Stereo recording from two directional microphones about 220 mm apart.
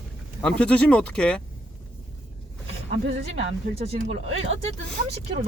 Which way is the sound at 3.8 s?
25° right (ahead or behind).